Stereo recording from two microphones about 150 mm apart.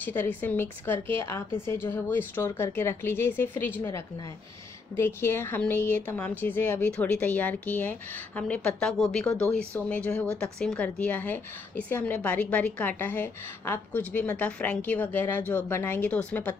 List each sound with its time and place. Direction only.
0.0 s speech: 10° left (ahead or behind)